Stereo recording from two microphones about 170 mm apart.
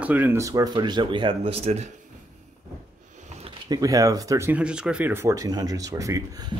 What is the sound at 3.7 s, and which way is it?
Speech, 20° right (ahead or behind).